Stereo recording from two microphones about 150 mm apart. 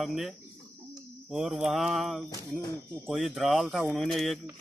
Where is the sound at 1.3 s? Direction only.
5° right (ahead or behind).